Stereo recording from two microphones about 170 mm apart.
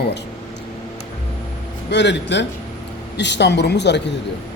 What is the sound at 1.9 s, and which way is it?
A woman's voice, 90° left.